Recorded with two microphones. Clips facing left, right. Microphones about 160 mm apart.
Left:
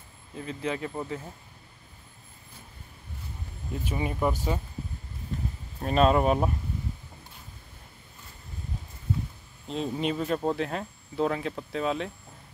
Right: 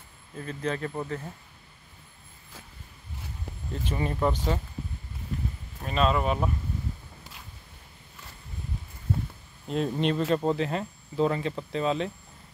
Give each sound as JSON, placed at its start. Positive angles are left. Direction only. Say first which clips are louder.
{"t": 0.4, "sound": "speech", "louder": "right 1 dB", "side_deg": 15}
{"t": 3.7, "sound": "speech", "louder": "right 1 dB", "side_deg": 10}
{"t": 5.9, "sound": "speech", "louder": "left 4 dB", "side_deg": 45}
{"t": 9.7, "sound": "speech", "louder": "right 3 dB", "side_deg": 0}